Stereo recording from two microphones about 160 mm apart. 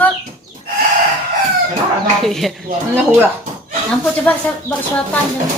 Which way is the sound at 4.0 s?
10° left (ahead or behind).